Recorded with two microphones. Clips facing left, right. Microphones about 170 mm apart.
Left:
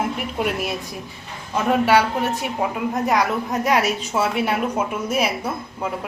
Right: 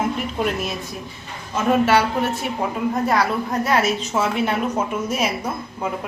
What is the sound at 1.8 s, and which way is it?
Speech, 10° left (ahead or behind).